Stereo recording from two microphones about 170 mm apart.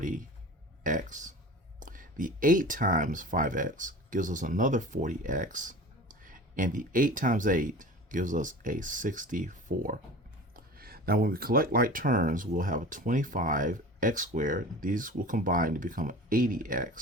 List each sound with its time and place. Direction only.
0.0 s speech: 50° right (ahead or behind)
10.5 s speech: 60° right (ahead or behind)